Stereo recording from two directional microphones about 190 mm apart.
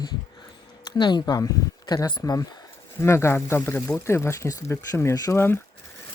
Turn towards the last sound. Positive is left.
turn(degrees=15)  # may be behind; listen again after turning